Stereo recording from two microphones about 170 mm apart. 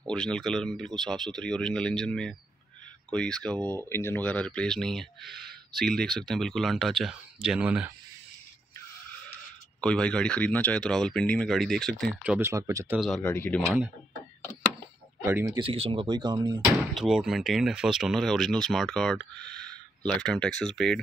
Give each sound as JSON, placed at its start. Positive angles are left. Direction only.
{"t": 0.0, "sound": "speech", "side_deg": 5}
{"t": 9.8, "sound": "speech", "side_deg": 5}
{"t": 12.2, "sound": "speech", "side_deg": -10}
{"t": 12.9, "sound": "speech", "side_deg": 0}
{"t": 13.2, "sound": "speech", "side_deg": 10}
{"t": 15.2, "sound": "speech", "side_deg": -20}
{"t": 15.7, "sound": "speech", "side_deg": -35}
{"t": 16.6, "sound": "speech", "side_deg": -5}